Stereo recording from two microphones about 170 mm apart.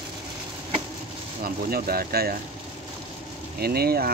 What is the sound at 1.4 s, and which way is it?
Speech, 60° right (ahead or behind).